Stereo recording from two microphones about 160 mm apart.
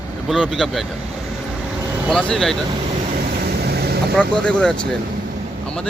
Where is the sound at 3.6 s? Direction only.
80° right.